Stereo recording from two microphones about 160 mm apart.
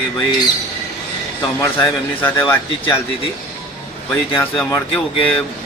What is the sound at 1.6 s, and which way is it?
Speech, 15° left (ahead or behind).